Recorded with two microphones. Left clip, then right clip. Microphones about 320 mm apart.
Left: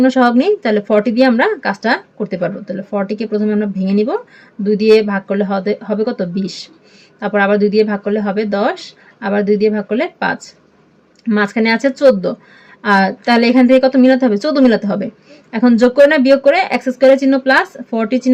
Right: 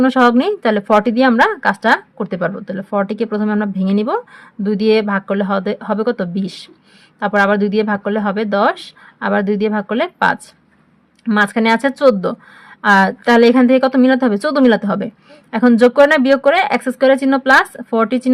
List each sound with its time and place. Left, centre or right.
0.0 s a woman's voice: right
5.0 s speech: right
5.4 s a woman's voice: right
7.3 s speech: right
7.7 s a woman's voice: right
11.4 s a woman's voice: right